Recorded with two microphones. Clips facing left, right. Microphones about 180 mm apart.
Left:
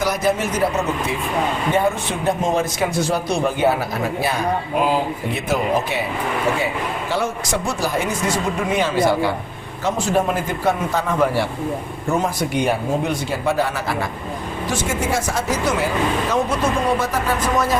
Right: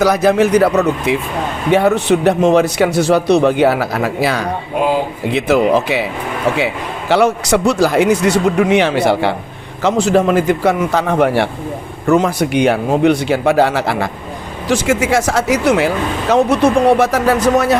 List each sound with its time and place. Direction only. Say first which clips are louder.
0.0 s a man's voice: right 8 dB; 75° right (ahead or behind)
7.1 s a man's voice: right 12 dB; 75° right (ahead or behind)
9.8 s speech: right 7 dB; 85° right; by 11.4 s 70° right (ahead or behind)
12.0 s a man's voice: right 8 dB; 80° right